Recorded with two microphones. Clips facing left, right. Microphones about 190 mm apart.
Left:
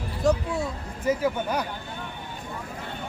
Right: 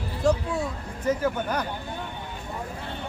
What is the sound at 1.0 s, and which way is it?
Speech, 10° left (ahead or behind).